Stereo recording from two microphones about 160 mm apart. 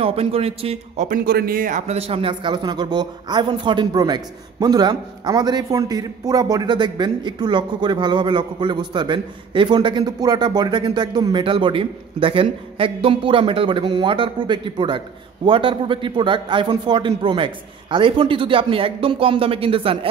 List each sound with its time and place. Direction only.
0.0 s a man's voice: 35° right (ahead or behind)
1.0 s speech: 65° right (ahead or behind)
1.9 s a man's voice: 40° right (ahead or behind)